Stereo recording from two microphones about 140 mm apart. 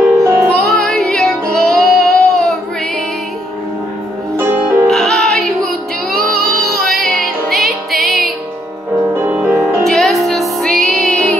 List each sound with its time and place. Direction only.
0.2 s music: 15° right (ahead or behind)
0.6 s music: centre (ahead or behind)
1.5 s child singing: centre (ahead or behind)
4.4 s music: 15° right (ahead or behind)
4.8 s music: 5° left (ahead or behind)
9.1 s music: 15° right (ahead or behind)
9.8 s music: centre (ahead or behind)